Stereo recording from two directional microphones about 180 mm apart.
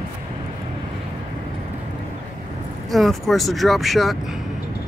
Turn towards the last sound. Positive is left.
turn(degrees=0)  # may be behind; listen again after turning